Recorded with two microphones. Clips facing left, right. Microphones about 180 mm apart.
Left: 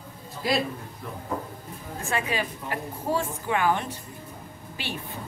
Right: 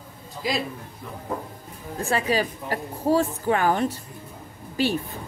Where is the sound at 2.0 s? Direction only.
35° right (ahead or behind).